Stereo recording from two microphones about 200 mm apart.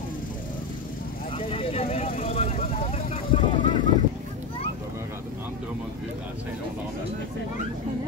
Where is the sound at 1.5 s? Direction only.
30° left (ahead or behind).